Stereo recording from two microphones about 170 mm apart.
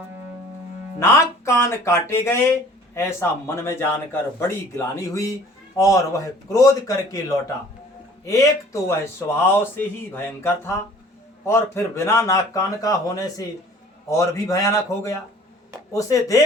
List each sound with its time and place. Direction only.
0.9 s a man's voice: 15° left (ahead or behind)